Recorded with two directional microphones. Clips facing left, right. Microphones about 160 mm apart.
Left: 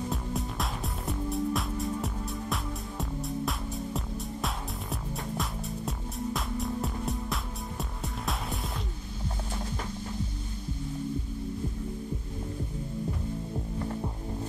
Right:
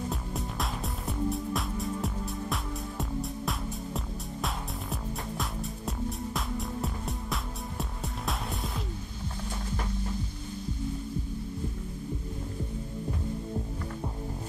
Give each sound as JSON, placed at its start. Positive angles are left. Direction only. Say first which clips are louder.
{"t": 0.1, "sound": "music", "louder": "left 2 dB", "side_deg": 0}